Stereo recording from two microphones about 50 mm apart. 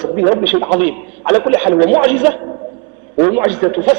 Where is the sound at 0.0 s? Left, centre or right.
Centre.